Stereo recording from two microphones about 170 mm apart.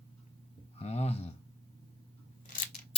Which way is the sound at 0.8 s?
40° left (ahead or behind).